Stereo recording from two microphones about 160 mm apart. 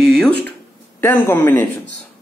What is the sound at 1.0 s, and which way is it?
Speech, 15° left (ahead or behind).